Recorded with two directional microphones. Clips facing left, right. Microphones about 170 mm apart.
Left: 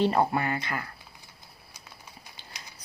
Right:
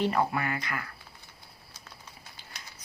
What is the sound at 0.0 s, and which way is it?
Speech, 30° left (ahead or behind).